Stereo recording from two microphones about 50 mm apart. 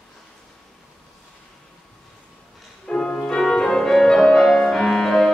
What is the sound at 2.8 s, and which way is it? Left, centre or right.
Music, centre.